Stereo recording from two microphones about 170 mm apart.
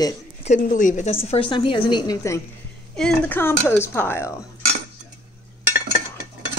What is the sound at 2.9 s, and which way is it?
Speech, 5° left (ahead or behind).